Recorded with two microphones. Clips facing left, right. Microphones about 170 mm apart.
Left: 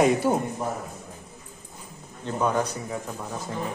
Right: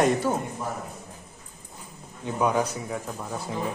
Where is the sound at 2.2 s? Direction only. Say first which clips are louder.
Right 1 dB; 10° right (ahead or behind).